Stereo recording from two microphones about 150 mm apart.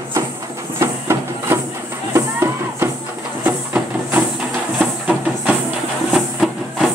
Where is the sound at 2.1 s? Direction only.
15° right (ahead or behind).